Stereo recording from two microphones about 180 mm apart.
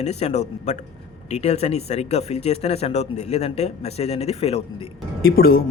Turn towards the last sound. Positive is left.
turn(degrees=55)  # may be behind; listen again after turning